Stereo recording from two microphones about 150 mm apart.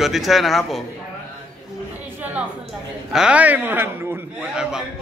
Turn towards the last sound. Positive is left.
turn(degrees=-5)  # may be behind; listen again after turning